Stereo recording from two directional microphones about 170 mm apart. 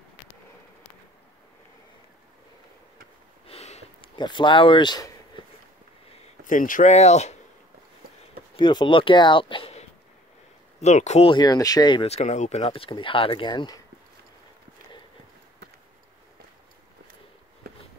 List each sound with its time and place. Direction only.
3.4 s sniff: 40° left (ahead or behind)
4.2 s speech: 30° left (ahead or behind)
6.0 s a sound: 35° left (ahead or behind)
6.4 s speech: 50° left (ahead or behind)
8.5 s speech: 30° left (ahead or behind)
11.2 s speech: 25° left (ahead or behind)
17.6 s a sound: 65° right (ahead or behind)